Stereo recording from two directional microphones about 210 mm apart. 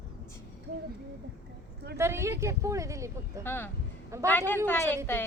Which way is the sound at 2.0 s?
10° right (ahead or behind).